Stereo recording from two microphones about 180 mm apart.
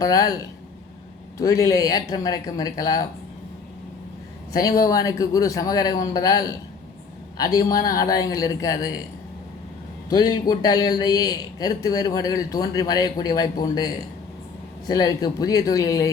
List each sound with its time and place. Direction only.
0.0 s speech: 20° left (ahead or behind)
4.8 s speech: 20° left (ahead or behind)
10.1 s speech: 20° left (ahead or behind)